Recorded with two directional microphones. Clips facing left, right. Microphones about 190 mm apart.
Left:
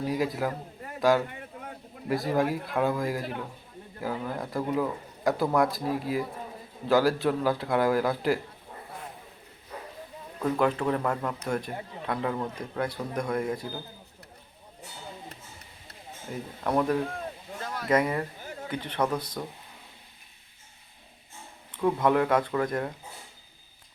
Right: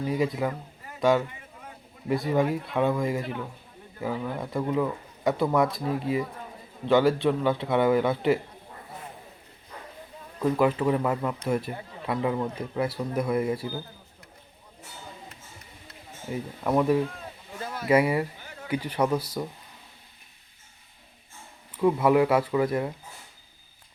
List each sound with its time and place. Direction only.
0.0 s a man's voice: centre (ahead or behind)
1.3 s a sound: 55° left (ahead or behind)
2.0 s a man's voice: centre (ahead or behind)
10.4 s a man's voice: 5° right (ahead or behind)
16.3 s a man's voice: 5° right (ahead or behind)
21.7 s speech: 5° right (ahead or behind)